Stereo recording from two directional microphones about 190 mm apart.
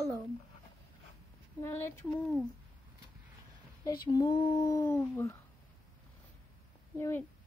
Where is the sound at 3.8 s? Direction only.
20° left (ahead or behind).